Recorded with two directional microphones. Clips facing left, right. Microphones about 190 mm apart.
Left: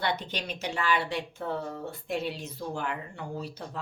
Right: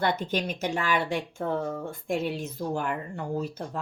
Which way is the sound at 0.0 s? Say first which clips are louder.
Right 5 dB; 45° right (ahead or behind).